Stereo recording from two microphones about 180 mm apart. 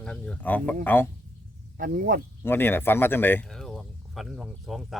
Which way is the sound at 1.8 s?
50° right (ahead or behind).